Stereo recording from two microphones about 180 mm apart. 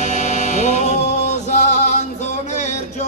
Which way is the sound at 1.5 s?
40° left (ahead or behind).